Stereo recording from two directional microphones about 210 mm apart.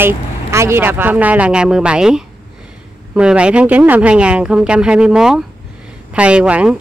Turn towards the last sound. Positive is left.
turn(degrees=-5)  # may be behind; listen again after turning